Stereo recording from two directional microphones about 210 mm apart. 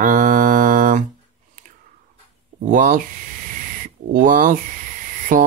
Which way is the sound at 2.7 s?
40° right (ahead or behind).